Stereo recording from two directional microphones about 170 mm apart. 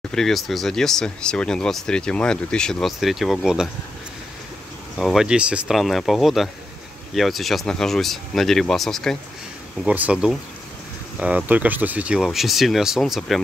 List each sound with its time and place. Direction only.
0.1 s speech: centre (ahead or behind)
4.9 s speech: centre (ahead or behind)